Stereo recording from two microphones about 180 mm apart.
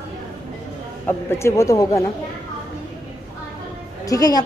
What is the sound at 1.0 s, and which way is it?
Speech, 15° left (ahead or behind).